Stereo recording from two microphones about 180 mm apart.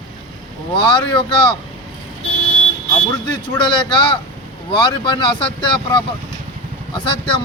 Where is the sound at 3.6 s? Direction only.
25° left (ahead or behind).